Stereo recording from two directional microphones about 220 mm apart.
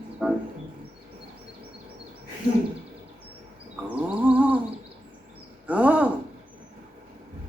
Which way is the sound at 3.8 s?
5° right (ahead or behind).